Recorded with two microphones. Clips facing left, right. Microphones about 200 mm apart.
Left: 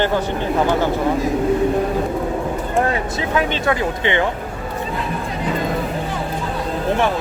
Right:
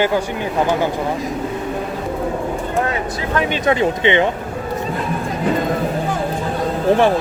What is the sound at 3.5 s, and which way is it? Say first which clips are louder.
Speech: right 3 dB; 20° right (ahead or behind).